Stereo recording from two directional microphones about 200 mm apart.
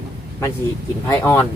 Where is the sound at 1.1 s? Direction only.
15° left (ahead or behind).